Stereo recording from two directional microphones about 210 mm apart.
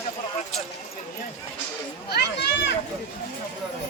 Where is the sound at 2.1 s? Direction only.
55° left (ahead or behind).